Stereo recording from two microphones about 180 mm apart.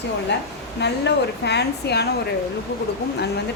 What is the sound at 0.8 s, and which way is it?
A woman's voice, 70° left (ahead or behind).